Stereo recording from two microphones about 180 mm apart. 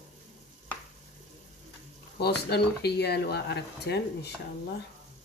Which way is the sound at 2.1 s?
65° left (ahead or behind).